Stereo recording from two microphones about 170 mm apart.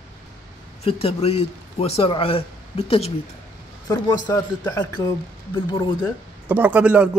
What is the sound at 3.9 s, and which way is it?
A man's voice, 25° left (ahead or behind).